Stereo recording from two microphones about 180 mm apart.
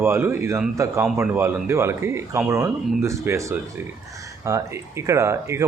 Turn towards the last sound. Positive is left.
turn(degrees=-15)  # may be behind; listen again after turning